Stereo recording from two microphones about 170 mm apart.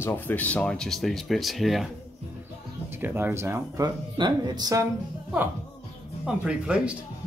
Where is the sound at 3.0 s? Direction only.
10° right (ahead or behind).